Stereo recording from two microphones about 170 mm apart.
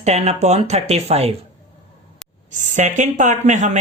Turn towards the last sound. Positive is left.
turn(degrees=-45)  # may be behind; listen again after turning